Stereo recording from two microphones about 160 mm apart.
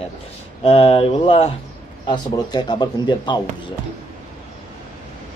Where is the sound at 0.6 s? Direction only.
35° left (ahead or behind).